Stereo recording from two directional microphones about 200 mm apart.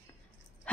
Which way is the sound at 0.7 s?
5° left (ahead or behind).